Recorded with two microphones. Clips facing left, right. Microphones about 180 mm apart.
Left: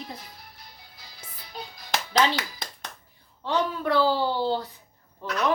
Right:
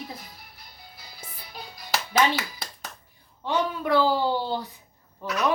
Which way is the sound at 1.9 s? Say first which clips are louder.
Even; 5° right (ahead or behind).